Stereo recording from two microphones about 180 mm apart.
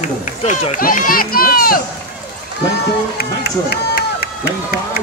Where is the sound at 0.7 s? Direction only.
50° left (ahead or behind).